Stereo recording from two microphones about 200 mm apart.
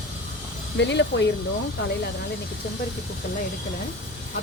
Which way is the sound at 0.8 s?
60° left (ahead or behind).